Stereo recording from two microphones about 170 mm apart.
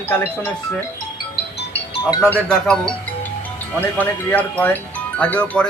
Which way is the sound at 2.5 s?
5° left (ahead or behind).